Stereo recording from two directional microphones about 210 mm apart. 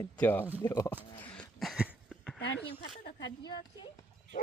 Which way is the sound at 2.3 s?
55° left (ahead or behind).